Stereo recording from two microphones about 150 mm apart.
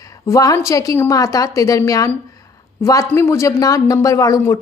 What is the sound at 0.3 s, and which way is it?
A woman's voice, 20° left (ahead or behind).